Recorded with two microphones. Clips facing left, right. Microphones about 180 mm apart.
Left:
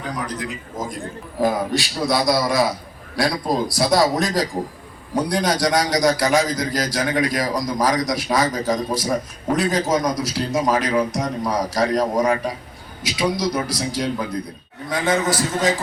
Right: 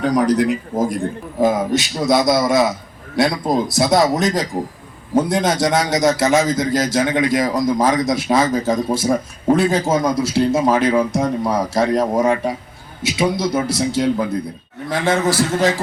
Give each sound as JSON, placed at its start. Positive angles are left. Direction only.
{"t": 0.0, "sound": "a man's voice", "side_deg": -80}
{"t": 0.3, "sound": "a man's voice", "side_deg": -65}
{"t": 1.4, "sound": "a man's voice", "side_deg": -20}